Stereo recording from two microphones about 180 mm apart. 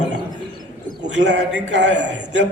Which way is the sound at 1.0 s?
75° right (ahead or behind).